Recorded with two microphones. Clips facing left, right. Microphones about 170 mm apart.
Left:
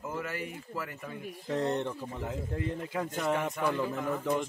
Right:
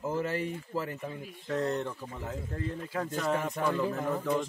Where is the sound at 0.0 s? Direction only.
30° right (ahead or behind).